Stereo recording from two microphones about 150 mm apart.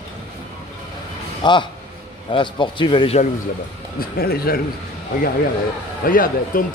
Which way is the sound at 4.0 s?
90° left.